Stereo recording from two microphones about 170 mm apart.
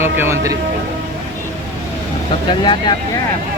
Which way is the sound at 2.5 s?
25° left (ahead or behind).